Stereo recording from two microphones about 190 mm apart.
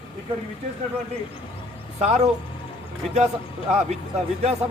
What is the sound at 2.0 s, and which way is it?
Speech, 35° right (ahead or behind).